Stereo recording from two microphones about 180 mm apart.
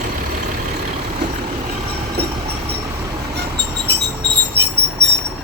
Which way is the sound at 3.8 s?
70° right (ahead or behind).